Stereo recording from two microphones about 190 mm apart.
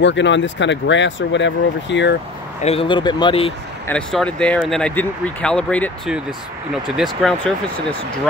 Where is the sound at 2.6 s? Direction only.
30° left (ahead or behind).